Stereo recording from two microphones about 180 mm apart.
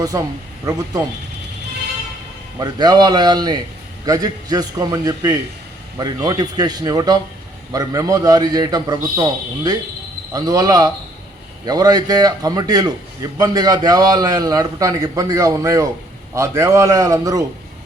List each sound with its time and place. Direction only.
0.0 s a man's voice: 20° right (ahead or behind)
2.6 s a man's voice: 20° right (ahead or behind)